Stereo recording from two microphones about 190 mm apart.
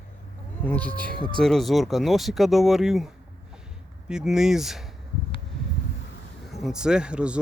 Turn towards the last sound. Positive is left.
turn(degrees=-5)  # may be behind; listen again after turning